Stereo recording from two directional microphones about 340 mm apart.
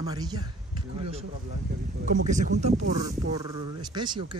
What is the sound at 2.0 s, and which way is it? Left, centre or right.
Speech, right.